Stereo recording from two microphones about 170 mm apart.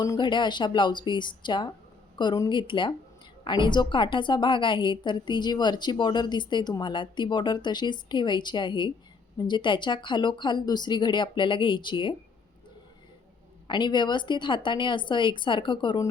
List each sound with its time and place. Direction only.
0.0 s a woman's voice: 25° left (ahead or behind)
13.7 s a woman's voice: 25° left (ahead or behind)